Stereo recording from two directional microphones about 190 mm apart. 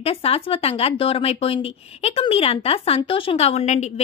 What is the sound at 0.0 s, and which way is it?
Speech, 30° left (ahead or behind).